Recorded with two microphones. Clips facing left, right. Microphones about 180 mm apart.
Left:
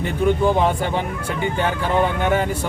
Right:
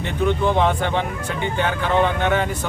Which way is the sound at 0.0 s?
10° left (ahead or behind).